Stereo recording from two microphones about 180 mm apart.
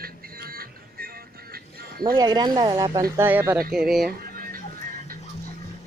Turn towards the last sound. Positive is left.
turn(degrees=-55)  # may be behind; listen again after turning